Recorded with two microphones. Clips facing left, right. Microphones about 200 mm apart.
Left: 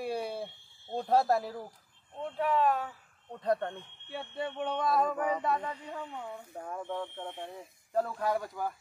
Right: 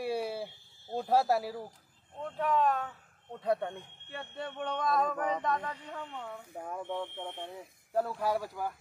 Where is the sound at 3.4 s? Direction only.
10° right (ahead or behind).